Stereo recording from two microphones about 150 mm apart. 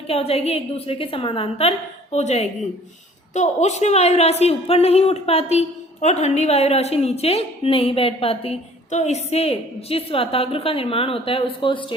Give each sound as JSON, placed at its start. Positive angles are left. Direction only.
{"t": 0.1, "sound": "a woman's voice", "side_deg": 40}